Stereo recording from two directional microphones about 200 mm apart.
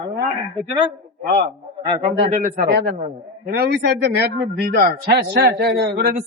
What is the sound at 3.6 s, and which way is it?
A man's voice, 55° right (ahead or behind).